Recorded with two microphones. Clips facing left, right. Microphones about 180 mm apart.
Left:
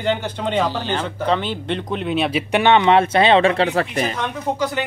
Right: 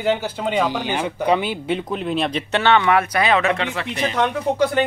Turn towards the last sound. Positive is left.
turn(degrees=-55)  # may be behind; listen again after turning